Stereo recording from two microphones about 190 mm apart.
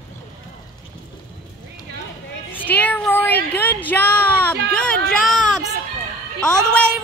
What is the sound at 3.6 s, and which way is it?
Music, 10° left (ahead or behind).